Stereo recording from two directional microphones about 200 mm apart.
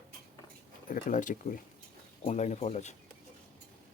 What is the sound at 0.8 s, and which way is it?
Speech, 40° left (ahead or behind).